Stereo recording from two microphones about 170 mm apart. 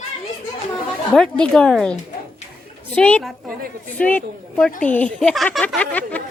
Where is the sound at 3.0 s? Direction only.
5° left (ahead or behind).